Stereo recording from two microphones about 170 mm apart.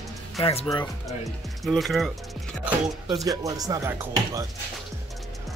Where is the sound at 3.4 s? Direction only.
20° right (ahead or behind).